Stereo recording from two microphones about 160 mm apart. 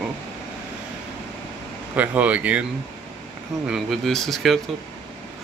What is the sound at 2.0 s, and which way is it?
Speech, 10° right (ahead or behind).